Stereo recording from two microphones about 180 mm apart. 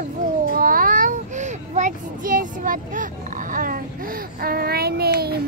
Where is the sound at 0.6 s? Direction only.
50° right (ahead or behind).